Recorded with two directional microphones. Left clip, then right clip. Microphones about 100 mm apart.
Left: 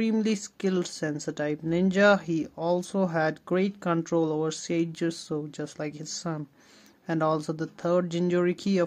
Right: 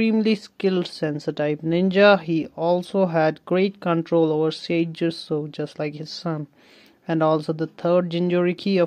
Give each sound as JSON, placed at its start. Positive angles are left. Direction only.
{"t": 0.2, "sound": "speech", "side_deg": -25}